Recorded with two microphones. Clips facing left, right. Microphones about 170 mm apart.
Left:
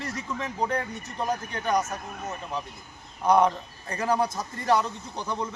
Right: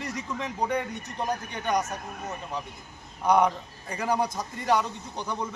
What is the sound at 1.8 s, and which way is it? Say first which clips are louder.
Speech: left 1 dB; 5° left (ahead or behind).